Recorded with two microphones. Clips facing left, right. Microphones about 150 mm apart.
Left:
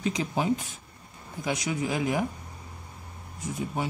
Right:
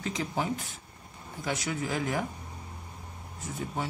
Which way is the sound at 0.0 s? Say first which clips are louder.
Left 4 dB; 20° left (ahead or behind).